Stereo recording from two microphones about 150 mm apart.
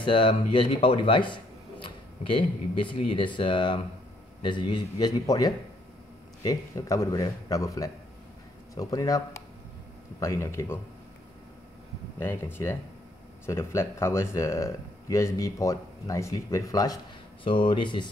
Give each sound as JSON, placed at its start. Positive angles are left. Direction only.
{"t": 0.0, "sound": "a man's voice", "side_deg": 35}
{"t": 12.2, "sound": "a man's voice", "side_deg": 15}